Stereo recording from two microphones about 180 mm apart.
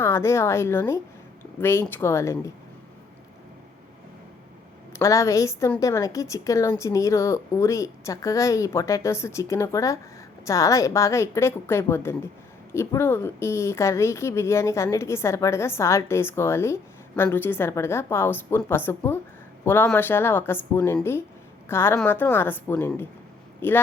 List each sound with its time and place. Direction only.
0.0 s a woman's voice: 15° left (ahead or behind)
4.9 s a woman's voice: 15° left (ahead or behind)